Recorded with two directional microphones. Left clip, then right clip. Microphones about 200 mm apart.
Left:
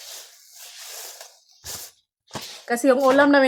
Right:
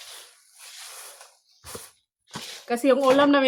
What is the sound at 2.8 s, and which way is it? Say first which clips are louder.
Speech: left 2 dB; 30° left (ahead or behind).